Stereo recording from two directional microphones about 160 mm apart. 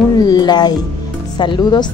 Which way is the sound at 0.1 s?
25° left (ahead or behind).